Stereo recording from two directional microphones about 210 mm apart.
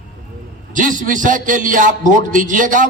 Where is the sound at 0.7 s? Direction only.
40° right (ahead or behind).